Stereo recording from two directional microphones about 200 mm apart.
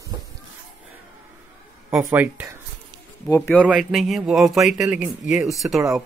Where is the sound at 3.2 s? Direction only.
15° left (ahead or behind).